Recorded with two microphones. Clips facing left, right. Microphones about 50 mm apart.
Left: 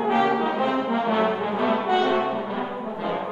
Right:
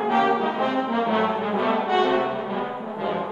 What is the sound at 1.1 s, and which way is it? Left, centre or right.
Brass instrument, centre.